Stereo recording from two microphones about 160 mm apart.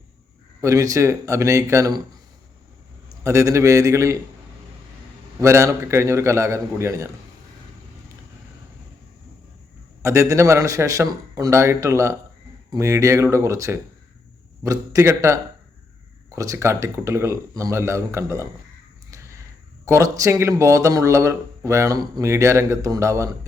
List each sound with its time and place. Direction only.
0.6 s speech: 20° right (ahead or behind)
3.2 s speech: 20° right (ahead or behind)
5.4 s speech: 20° right (ahead or behind)
10.0 s speech: 20° right (ahead or behind)
19.1 s a sound: 20° right (ahead or behind)
19.8 s speech: 20° right (ahead or behind)